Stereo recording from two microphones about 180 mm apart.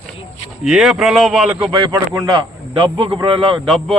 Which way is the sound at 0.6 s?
Centre (ahead or behind).